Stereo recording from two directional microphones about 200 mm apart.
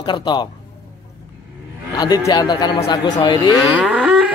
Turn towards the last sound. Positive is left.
turn(degrees=-5)  # may be behind; listen again after turning